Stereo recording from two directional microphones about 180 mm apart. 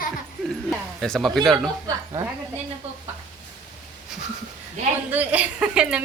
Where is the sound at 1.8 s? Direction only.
20° right (ahead or behind).